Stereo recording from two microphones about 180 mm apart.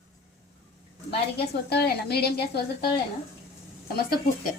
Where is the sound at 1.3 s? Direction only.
65° left (ahead or behind).